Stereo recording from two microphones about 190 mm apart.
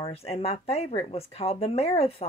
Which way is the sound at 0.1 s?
30° left (ahead or behind).